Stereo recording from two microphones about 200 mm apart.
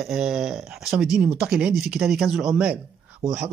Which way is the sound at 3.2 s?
15° right (ahead or behind).